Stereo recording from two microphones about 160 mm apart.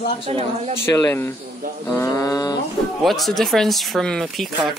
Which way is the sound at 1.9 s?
20° left (ahead or behind).